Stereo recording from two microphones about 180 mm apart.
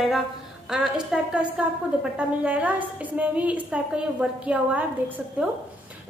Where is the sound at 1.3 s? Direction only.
5° right (ahead or behind).